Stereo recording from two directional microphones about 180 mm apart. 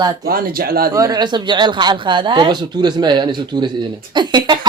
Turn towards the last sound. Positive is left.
turn(degrees=-25)  # may be behind; listen again after turning